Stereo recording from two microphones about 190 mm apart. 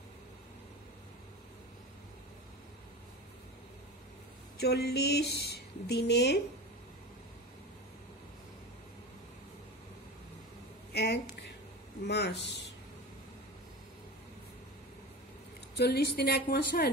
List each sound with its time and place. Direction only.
4.6 s a woman's voice: 55° left (ahead or behind)
10.9 s a sound: 60° left (ahead or behind)
12.1 s a woman's voice: 65° left (ahead or behind)
15.7 s a woman's voice: 60° left (ahead or behind)